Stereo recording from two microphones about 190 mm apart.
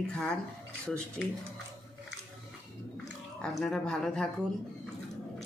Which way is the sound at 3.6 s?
5° left (ahead or behind).